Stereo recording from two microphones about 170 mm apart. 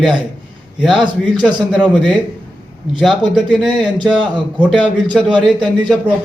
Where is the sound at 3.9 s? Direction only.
30° right (ahead or behind).